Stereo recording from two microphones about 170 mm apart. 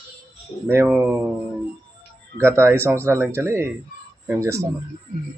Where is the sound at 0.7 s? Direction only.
10° right (ahead or behind).